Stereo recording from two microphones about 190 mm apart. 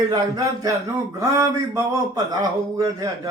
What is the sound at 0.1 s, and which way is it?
A man's voice, 20° right (ahead or behind).